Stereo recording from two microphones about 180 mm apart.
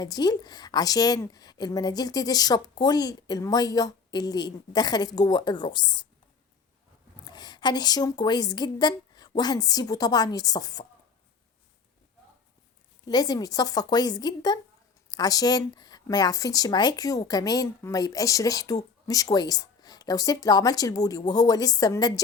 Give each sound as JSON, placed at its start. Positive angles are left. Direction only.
{"t": 0.0, "sound": "speech", "side_deg": 20}
{"t": 7.3, "sound": "speech", "side_deg": 25}
{"t": 13.1, "sound": "speech", "side_deg": 20}